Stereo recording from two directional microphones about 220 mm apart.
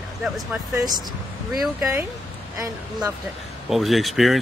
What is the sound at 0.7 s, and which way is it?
Speech, 15° right (ahead or behind).